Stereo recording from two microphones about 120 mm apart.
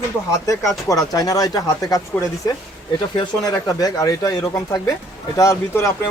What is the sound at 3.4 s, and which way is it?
Speech, 30° left (ahead or behind).